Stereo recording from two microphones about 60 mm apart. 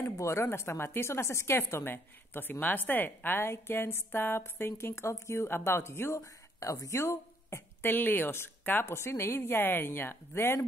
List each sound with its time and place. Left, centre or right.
0.2 s a woman's voice: left
7.9 s a woman's voice: left